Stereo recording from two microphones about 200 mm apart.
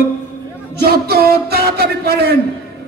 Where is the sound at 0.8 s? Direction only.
50° right (ahead or behind).